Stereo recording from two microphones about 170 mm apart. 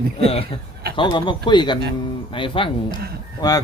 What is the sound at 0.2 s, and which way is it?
Speech, 35° left (ahead or behind).